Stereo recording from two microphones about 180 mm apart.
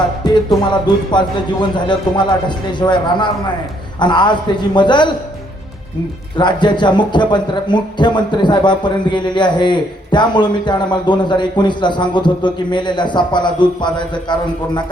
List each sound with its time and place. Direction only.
0.7 s a man's voice: 25° left (ahead or behind)
6.3 s a man's voice: 25° left (ahead or behind)